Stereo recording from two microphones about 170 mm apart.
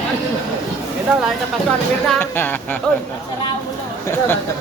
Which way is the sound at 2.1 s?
10° left (ahead or behind).